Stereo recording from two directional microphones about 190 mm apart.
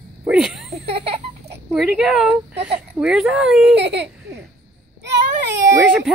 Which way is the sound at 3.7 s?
65° right (ahead or behind).